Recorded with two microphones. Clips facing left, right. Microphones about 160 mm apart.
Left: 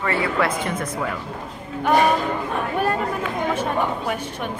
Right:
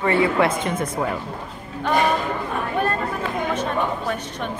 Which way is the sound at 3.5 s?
10° left (ahead or behind).